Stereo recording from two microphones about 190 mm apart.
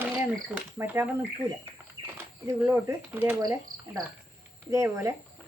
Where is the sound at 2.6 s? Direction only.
10° right (ahead or behind).